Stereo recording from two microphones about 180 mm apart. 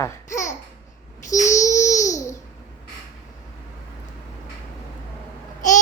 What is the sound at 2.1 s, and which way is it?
Babbling, 15° left (ahead or behind).